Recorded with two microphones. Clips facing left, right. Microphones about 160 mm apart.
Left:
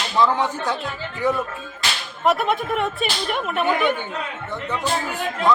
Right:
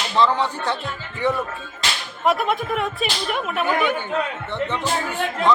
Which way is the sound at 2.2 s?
Centre (ahead or behind).